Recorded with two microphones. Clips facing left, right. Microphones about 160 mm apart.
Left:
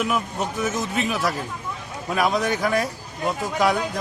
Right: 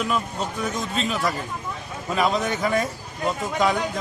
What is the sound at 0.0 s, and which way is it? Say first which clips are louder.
Speech: left 1 dB; 15° left (ahead or behind).